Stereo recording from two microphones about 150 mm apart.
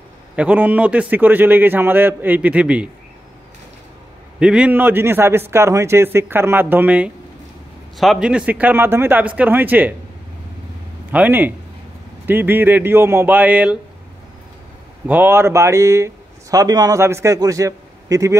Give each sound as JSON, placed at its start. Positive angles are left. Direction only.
{"t": 0.4, "sound": "a man's voice", "side_deg": -10}
{"t": 4.4, "sound": "a man's voice", "side_deg": -5}
{"t": 11.1, "sound": "a man's voice", "side_deg": -10}
{"t": 15.0, "sound": "speech", "side_deg": -15}